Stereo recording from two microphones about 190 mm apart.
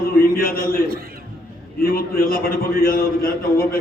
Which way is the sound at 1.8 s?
50° left (ahead or behind).